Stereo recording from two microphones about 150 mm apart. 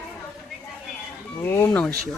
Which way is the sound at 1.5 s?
15° left (ahead or behind).